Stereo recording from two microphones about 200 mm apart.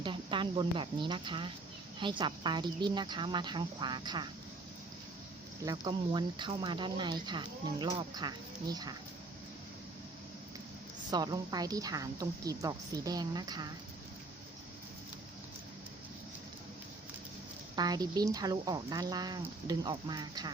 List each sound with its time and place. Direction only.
0.0 s speech: 25° right (ahead or behind)
5.6 s speech: 20° right (ahead or behind)
11.1 s speech: 20° right (ahead or behind)
17.7 s speech: 20° right (ahead or behind)